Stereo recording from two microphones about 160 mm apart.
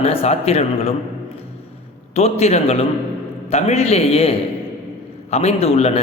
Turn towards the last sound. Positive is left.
turn(degrees=40)  # may be behind; listen again after turning